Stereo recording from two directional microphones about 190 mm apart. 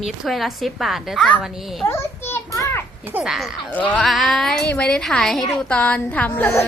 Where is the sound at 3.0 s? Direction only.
5° right (ahead or behind); by 6.6 s 15° left (ahead or behind).